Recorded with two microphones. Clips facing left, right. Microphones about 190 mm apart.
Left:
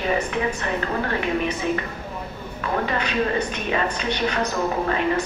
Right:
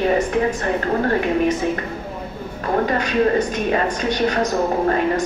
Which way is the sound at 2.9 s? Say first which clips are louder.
Right 7 dB; 40° right (ahead or behind).